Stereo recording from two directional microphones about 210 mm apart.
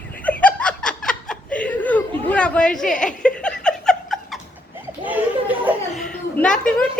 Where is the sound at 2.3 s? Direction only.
5° left (ahead or behind).